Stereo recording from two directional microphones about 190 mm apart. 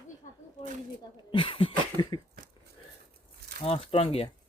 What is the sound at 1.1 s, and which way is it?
Speech, 25° left (ahead or behind).